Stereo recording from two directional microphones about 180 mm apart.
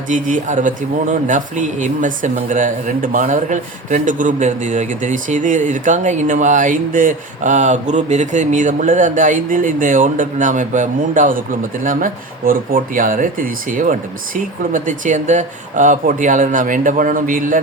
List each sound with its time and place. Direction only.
0.1 s speech: 45° right (ahead or behind)